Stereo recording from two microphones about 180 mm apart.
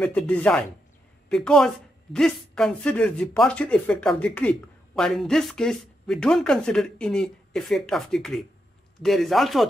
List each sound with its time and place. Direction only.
0.0 s speech: 5° left (ahead or behind)